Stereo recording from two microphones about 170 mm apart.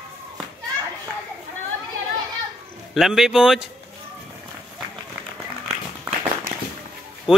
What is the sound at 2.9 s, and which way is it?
Speech, 5° right (ahead or behind).